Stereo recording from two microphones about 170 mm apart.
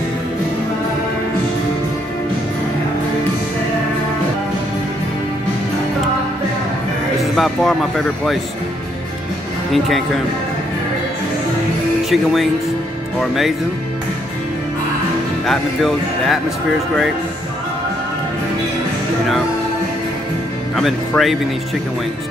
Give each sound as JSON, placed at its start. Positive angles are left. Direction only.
{"t": 7.2, "sound": "music", "side_deg": 0}
{"t": 9.7, "sound": "speech", "side_deg": 0}
{"t": 12.1, "sound": "speech", "side_deg": 0}
{"t": 15.4, "sound": "speech", "side_deg": 0}
{"t": 20.7, "sound": "speech", "side_deg": 0}